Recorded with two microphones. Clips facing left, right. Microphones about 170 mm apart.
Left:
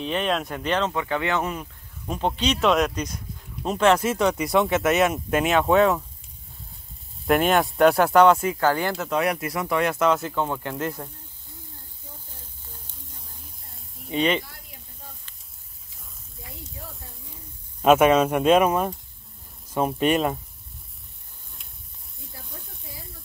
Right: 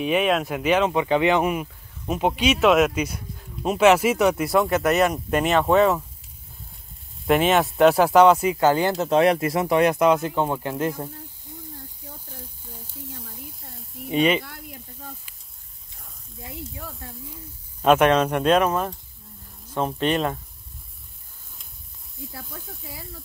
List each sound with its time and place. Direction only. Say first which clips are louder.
0.0 s speech: right 4 dB; 5° right (ahead or behind)
7.2 s speech: right 1 dB; centre (ahead or behind); by 11.1 s 20° right (ahead or behind)
13.7 s snake: right 4 dB; 10° right (ahead or behind)
17.8 s speech: left 1 dB; 5° left (ahead or behind)